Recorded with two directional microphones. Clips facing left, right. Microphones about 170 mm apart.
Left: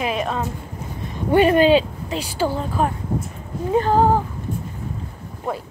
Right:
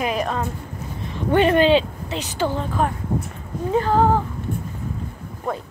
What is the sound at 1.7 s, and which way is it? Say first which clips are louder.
Speech: left 1 dB; 40° left (ahead or behind).